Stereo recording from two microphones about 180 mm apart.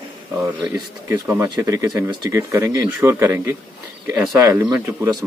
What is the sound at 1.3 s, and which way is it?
Speech, 20° right (ahead or behind).